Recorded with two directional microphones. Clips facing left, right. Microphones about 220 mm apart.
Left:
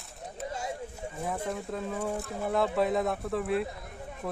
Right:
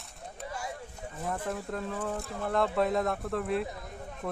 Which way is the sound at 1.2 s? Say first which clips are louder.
Even; 5° left (ahead or behind).